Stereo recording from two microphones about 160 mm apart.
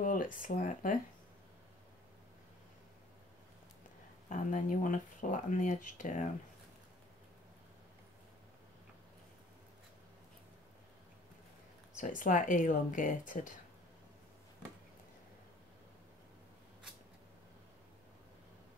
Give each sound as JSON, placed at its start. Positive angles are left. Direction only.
{"t": 0.0, "sound": "speech", "side_deg": 55}
{"t": 4.3, "sound": "speech", "side_deg": 55}
{"t": 12.0, "sound": "speech", "side_deg": 55}